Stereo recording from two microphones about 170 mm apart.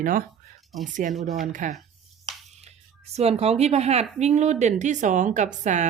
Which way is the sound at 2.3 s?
25° right (ahead or behind).